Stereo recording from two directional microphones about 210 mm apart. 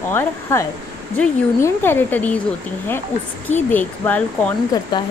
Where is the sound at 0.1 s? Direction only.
10° left (ahead or behind).